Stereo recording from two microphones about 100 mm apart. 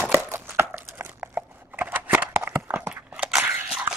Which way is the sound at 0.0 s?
20° right (ahead or behind).